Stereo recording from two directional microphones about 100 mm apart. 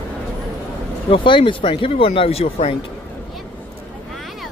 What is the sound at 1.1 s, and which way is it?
Speech, 60° left (ahead or behind).